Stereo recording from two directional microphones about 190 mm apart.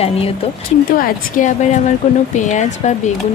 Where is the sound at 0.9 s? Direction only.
45° left (ahead or behind).